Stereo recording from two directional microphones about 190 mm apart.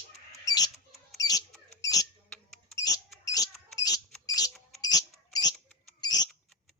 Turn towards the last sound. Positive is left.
turn(degrees=20)  # may be behind; listen again after turning